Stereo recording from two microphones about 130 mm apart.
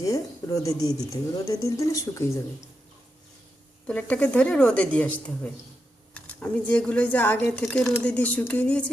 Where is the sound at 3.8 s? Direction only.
10° left (ahead or behind).